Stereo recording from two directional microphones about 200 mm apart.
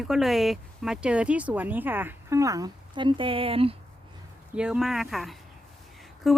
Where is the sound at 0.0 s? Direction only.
Centre (ahead or behind); by 3.8 s 30° right (ahead or behind).